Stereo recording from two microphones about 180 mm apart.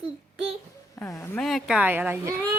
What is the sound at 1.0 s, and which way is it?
Speech, 15° left (ahead or behind).